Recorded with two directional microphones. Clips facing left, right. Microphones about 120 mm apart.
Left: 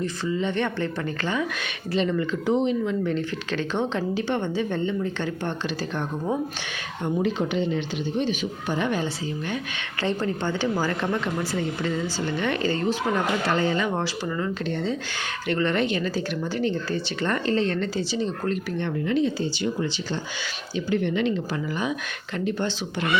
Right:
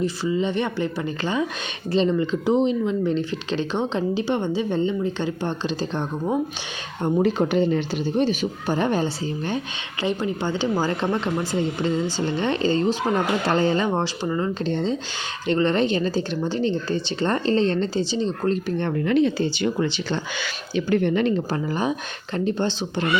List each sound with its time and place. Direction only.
0.3 s speech: 15° right (ahead or behind)
7.0 s speech: 45° right (ahead or behind)
10.0 s speech: 15° right (ahead or behind); by 18.9 s 30° right (ahead or behind)
19.0 s speech: 65° right (ahead or behind)
21.0 s speech: 45° right (ahead or behind); by 23.0 s 30° right (ahead or behind)